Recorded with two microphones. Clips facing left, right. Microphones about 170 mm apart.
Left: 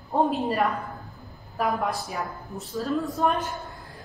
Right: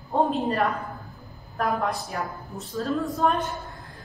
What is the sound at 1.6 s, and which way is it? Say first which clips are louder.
A woman's voice: even; centre (ahead or behind).